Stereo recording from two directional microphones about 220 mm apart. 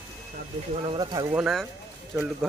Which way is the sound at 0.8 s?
20° right (ahead or behind).